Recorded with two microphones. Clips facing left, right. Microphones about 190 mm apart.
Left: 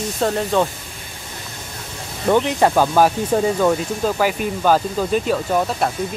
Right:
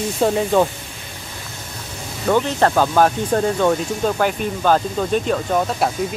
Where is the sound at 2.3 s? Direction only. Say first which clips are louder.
Left 1 dB; 15° left (ahead or behind).